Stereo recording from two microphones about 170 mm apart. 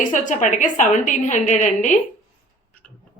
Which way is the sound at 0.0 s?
50° left (ahead or behind).